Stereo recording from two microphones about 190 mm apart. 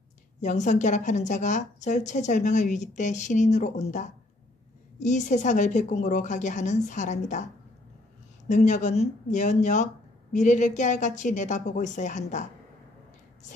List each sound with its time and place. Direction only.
0.4 s a woman's voice: 40° left (ahead or behind)
8.5 s a woman's voice: 40° left (ahead or behind)